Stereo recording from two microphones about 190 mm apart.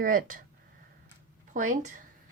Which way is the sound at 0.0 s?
45° right (ahead or behind).